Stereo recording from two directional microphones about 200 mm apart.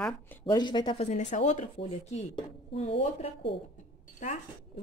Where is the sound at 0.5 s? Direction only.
20° left (ahead or behind).